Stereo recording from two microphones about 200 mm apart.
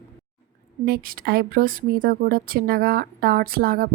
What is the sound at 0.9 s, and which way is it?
A woman's voice, 45° right (ahead or behind).